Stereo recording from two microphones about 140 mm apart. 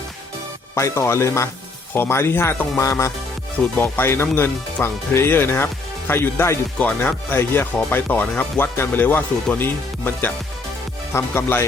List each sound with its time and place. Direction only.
0.8 s speech: 20° left (ahead or behind)